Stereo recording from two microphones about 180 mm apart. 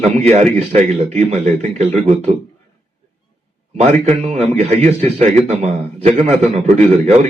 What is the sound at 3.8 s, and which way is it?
A man's voice, 35° right (ahead or behind).